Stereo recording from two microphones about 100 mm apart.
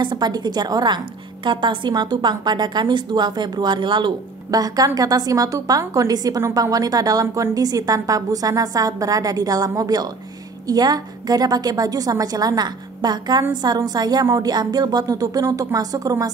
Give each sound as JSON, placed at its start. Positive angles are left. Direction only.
{"t": 0.0, "sound": "a woman's voice", "side_deg": -50}